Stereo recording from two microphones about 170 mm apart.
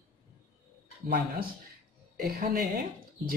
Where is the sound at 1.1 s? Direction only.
60° right (ahead or behind).